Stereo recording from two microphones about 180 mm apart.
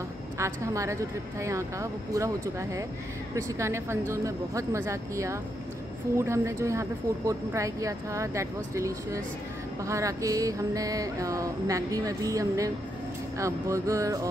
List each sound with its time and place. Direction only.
0.4 s a woman's voice: 15° right (ahead or behind)
9.8 s a sound: 15° right (ahead or behind)
13.4 s a woman's voice: 15° right (ahead or behind)